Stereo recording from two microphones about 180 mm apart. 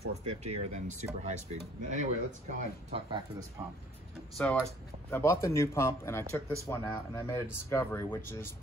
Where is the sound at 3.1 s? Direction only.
20° right (ahead or behind).